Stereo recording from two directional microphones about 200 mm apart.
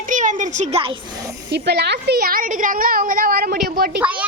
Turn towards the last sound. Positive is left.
turn(degrees=-5)  # may be behind; listen again after turning